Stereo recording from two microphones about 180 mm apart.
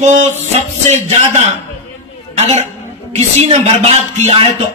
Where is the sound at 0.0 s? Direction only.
40° right (ahead or behind).